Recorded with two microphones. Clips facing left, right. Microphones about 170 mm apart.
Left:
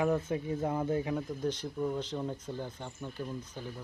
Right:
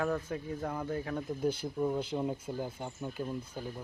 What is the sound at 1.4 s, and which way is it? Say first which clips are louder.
Speech: right 2 dB; 10° right (ahead or behind).